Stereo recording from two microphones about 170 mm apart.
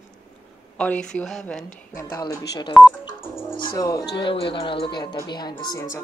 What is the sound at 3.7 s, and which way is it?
Speech, 20° left (ahead or behind).